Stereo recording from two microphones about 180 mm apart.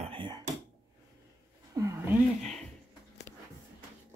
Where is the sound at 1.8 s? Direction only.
15° right (ahead or behind).